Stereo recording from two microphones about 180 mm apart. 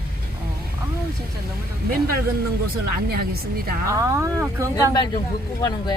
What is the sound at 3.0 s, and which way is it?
Speech, 60° right (ahead or behind).